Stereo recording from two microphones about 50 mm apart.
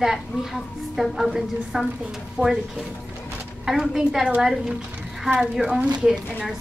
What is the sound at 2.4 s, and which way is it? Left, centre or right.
Speech, right.